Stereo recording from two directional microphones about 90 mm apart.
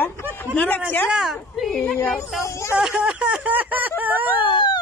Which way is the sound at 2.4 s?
30° left (ahead or behind).